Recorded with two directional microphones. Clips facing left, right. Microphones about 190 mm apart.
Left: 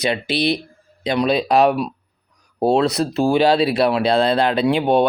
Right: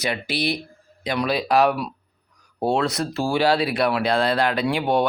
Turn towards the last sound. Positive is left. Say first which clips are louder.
# left 5 dB
turn(degrees=25)  # may be behind; listen again after turning